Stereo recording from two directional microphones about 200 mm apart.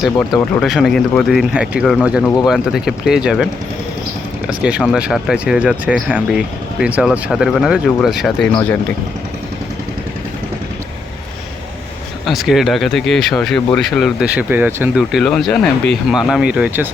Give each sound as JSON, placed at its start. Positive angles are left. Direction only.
{"t": 0.0, "sound": "speech", "side_deg": 5}
{"t": 4.6, "sound": "speech", "side_deg": 0}
{"t": 12.2, "sound": "speech", "side_deg": 0}